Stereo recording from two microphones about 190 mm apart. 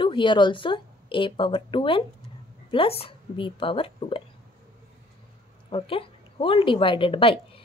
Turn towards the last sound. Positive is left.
turn(degrees=30)  # may be behind; listen again after turning